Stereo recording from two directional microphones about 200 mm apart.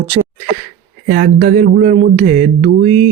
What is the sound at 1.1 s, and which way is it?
Speech, 45° right (ahead or behind).